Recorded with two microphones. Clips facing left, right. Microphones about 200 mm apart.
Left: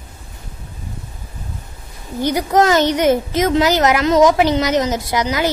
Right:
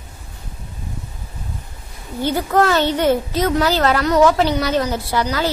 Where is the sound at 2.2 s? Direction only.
15° left (ahead or behind).